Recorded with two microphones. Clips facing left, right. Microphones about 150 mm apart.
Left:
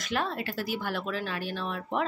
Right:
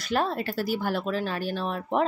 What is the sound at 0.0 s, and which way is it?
Speech, 35° right (ahead or behind).